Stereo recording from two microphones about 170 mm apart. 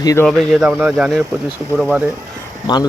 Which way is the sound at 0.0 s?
20° left (ahead or behind).